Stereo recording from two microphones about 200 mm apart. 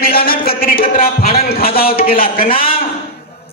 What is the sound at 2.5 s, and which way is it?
Speech, 25° left (ahead or behind).